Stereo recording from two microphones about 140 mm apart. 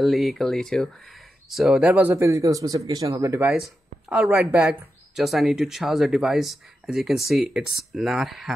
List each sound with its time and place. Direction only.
0.0 s speech: centre (ahead or behind); by 3.5 s 20° right (ahead or behind)
4.1 s speech: 5° right (ahead or behind)